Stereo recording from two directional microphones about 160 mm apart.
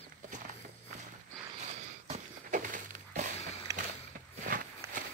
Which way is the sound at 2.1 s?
55° right (ahead or behind).